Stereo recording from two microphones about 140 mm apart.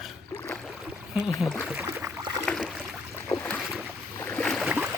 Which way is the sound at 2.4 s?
Centre (ahead or behind).